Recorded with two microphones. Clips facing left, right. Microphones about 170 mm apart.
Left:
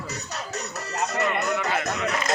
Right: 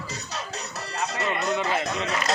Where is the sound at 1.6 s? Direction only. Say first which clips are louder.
Even; 25° right (ahead or behind).